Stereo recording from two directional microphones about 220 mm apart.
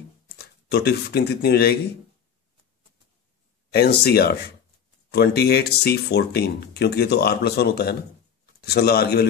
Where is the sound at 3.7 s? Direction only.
45° left (ahead or behind).